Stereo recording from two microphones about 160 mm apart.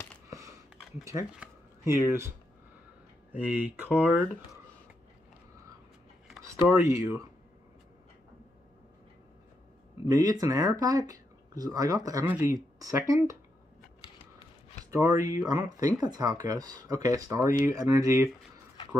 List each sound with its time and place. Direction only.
0.3 s a sound: 20° right (ahead or behind)
1.3 s speech: 10° right (ahead or behind)
3.3 s speech: 10° right (ahead or behind)
6.4 s speech: 15° right (ahead or behind)
10.0 s speech: 25° right (ahead or behind)
14.9 s speech: 20° right (ahead or behind)